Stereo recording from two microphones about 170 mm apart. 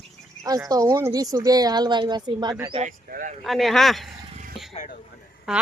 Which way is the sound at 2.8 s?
55° right (ahead or behind).